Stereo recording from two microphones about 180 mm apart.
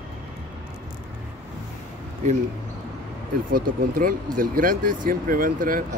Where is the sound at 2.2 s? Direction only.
40° right (ahead or behind).